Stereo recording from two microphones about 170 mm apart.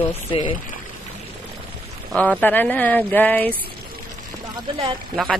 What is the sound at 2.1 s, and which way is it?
Speech, 10° left (ahead or behind).